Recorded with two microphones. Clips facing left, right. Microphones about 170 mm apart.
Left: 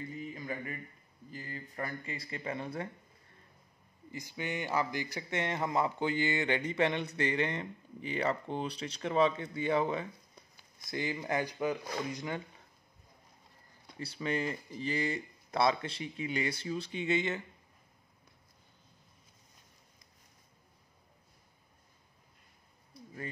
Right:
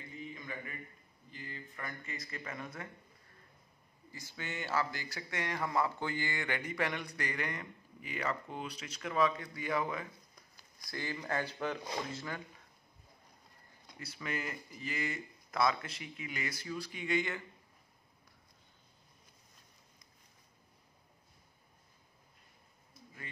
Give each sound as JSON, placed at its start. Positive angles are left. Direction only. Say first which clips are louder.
{"t": 0.2, "sound": "a sound", "louder": "left 1 dB", "side_deg": 35}
{"t": 1.3, "sound": "speech", "louder": "left 4 dB", "side_deg": 40}
{"t": 4.1, "sound": "a man's voice", "louder": "left 6 dB", "side_deg": 15}
{"t": 13.9, "sound": "a man's voice", "louder": "left 6 dB", "side_deg": 30}